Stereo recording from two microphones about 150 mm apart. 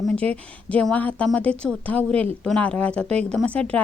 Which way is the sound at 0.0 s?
5° left (ahead or behind).